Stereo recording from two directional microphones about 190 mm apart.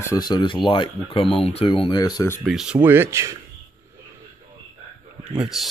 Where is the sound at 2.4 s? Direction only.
5° right (ahead or behind).